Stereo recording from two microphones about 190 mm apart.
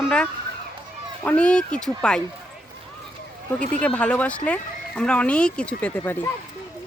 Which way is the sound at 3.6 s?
5° left (ahead or behind).